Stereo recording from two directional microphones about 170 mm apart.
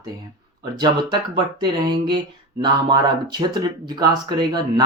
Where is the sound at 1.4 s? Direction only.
25° right (ahead or behind).